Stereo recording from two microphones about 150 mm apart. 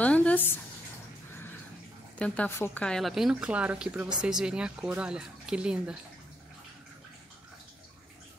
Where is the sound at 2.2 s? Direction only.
10° left (ahead or behind); by 6.0 s 5° right (ahead or behind).